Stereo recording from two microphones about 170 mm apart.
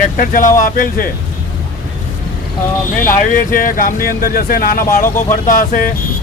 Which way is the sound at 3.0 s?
50° left (ahead or behind).